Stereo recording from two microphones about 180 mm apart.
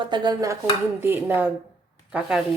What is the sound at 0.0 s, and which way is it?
Dishes, 25° right (ahead or behind).